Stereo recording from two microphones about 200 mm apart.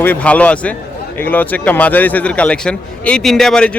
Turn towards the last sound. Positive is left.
turn(degrees=0)  # may be behind; listen again after turning